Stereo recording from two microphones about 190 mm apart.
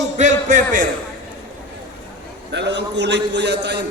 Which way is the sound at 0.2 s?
40° right (ahead or behind).